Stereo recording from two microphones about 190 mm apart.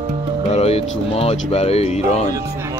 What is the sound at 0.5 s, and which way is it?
Speech, 30° left (ahead or behind).